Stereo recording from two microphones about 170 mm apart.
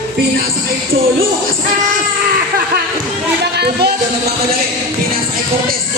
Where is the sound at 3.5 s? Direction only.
70° right (ahead or behind).